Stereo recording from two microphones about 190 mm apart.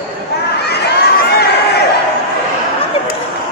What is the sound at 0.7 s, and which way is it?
Crowd, 60° left (ahead or behind).